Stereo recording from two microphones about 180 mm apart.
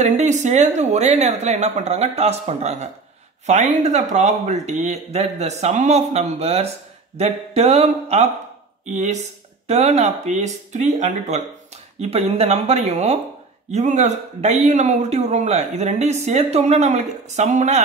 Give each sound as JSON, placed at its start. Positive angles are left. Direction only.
{"t": 0.0, "sound": "speech", "side_deg": -40}